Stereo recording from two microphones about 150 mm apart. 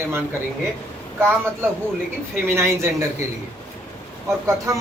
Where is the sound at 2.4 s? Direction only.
15° right (ahead or behind).